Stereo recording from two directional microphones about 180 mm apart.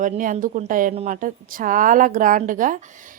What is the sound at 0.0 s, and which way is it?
A woman's voice, 45° right (ahead or behind).